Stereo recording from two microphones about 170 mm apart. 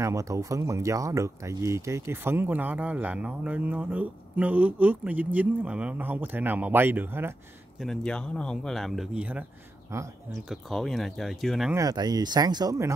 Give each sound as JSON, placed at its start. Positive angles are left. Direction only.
{"t": 0.0, "sound": "speech", "side_deg": -20}
{"t": 7.8, "sound": "speech", "side_deg": 0}
{"t": 10.5, "sound": "speech", "side_deg": 0}
{"t": 11.7, "sound": "speech", "side_deg": -20}